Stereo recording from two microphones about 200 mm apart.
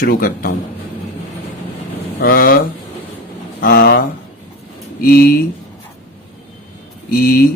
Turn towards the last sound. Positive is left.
turn(degrees=45)  # may be behind; listen again after turning